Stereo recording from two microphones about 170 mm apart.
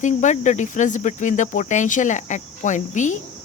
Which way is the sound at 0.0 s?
45° left (ahead or behind).